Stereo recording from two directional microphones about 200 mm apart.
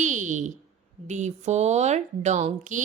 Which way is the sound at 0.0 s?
40° right (ahead or behind).